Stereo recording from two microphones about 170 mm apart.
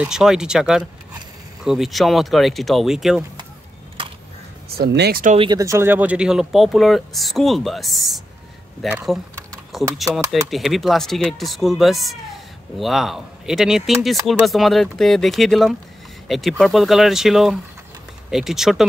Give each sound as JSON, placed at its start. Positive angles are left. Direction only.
{"t": 0.0, "sound": "speech", "side_deg": -5}
{"t": 4.6, "sound": "speech", "side_deg": -70}
{"t": 5.4, "sound": "speech", "side_deg": -20}